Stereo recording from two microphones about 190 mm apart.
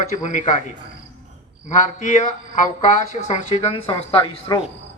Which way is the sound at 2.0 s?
40° left (ahead or behind).